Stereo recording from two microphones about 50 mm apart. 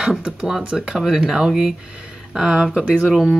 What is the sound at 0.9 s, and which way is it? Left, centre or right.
Speech, centre.